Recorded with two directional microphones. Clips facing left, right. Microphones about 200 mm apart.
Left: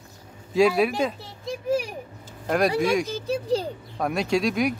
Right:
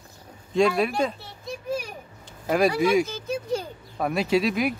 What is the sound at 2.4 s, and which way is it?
Speech, centre (ahead or behind).